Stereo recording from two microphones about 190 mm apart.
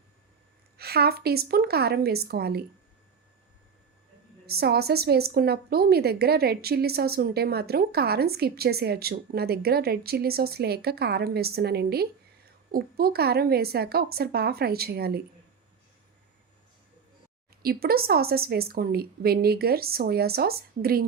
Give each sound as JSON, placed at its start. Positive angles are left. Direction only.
{"t": 0.8, "sound": "a woman's voice", "side_deg": -55}
{"t": 4.4, "sound": "a woman's voice", "side_deg": -55}
{"t": 17.6, "sound": "a woman's voice", "side_deg": -55}